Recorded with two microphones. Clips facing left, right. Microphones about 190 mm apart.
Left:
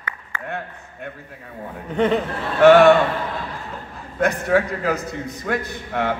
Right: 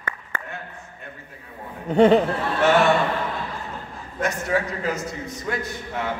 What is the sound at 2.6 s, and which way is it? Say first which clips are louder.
Speech: left 8 dB; 60° left (ahead or behind).